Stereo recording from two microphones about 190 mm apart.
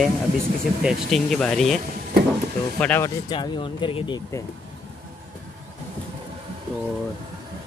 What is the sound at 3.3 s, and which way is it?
Speech, 25° left (ahead or behind).